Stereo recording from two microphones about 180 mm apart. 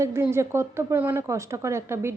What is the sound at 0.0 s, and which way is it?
A woman's voice, 15° right (ahead or behind).